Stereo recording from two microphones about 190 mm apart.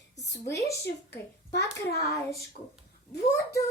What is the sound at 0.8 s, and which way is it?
A child's voice, 65° left (ahead or behind).